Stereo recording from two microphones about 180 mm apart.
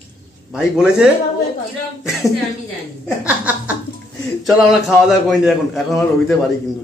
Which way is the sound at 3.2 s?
10° right (ahead or behind).